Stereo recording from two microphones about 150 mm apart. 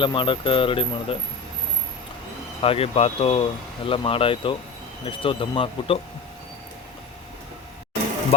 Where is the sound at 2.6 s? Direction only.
40° left (ahead or behind).